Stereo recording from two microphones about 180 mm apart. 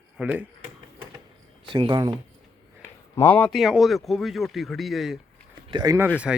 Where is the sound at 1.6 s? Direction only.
25° right (ahead or behind).